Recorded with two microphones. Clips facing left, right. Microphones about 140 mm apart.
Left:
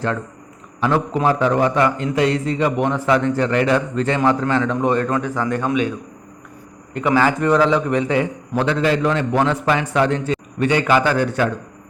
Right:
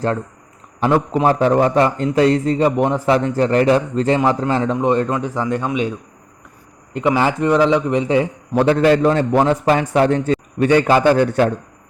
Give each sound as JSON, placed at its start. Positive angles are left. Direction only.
{"t": 0.8, "sound": "a man's voice", "side_deg": -25}
{"t": 6.9, "sound": "a man's voice", "side_deg": -25}
{"t": 8.6, "sound": "a man's voice", "side_deg": -50}
{"t": 9.0, "sound": "a man's voice", "side_deg": -35}